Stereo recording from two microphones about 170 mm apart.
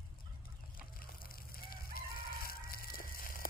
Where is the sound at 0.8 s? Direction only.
60° left (ahead or behind).